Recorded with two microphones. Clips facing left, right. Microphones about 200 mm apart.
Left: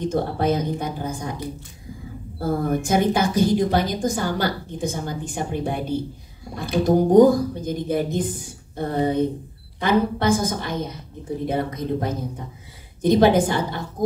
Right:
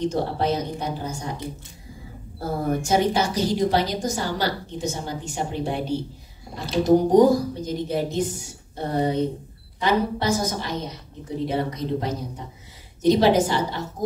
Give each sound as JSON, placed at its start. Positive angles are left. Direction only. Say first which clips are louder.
{"t": 0.0, "sound": "a woman's voice", "louder": "left 1 dB", "side_deg": 55}
{"t": 2.8, "sound": "a woman's voice", "louder": "even", "side_deg": 55}